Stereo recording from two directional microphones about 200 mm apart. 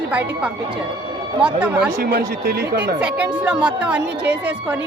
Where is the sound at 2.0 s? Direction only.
50° right (ahead or behind).